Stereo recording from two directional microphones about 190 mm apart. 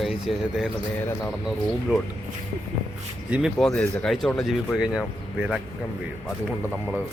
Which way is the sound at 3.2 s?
5° right (ahead or behind).